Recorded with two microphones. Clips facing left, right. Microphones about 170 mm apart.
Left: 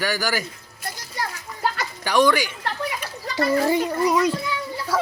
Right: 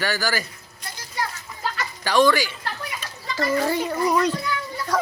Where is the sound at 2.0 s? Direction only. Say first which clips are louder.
Even; 15° left (ahead or behind).